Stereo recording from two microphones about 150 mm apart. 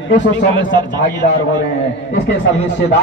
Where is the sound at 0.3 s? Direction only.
30° right (ahead or behind).